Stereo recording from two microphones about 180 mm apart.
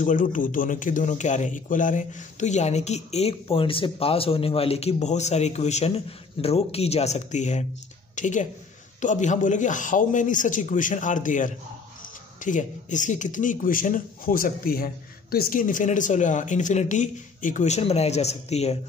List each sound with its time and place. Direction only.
0.0 s speech: 45° left (ahead or behind)